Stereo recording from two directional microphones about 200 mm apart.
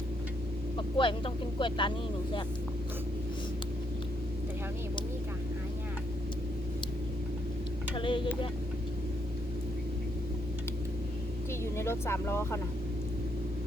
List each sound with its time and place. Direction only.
0.8 s speech: 25° left (ahead or behind)
7.9 s speech: 25° left (ahead or behind)
11.6 s speech: 15° left (ahead or behind)